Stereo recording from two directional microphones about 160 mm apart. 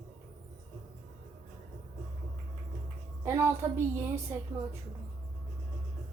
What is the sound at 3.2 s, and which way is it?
A woman's voice, 15° right (ahead or behind).